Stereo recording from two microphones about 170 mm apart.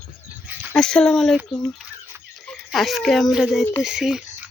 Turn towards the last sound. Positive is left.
turn(degrees=-5)  # may be behind; listen again after turning